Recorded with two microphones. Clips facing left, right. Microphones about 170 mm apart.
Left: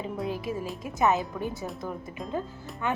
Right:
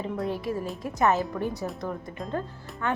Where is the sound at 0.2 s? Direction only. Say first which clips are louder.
Right 1 dB; centre (ahead or behind).